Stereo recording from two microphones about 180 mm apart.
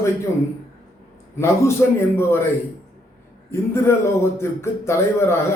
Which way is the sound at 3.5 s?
15° left (ahead or behind).